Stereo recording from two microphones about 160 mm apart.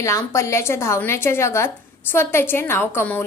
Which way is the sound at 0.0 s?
20° left (ahead or behind).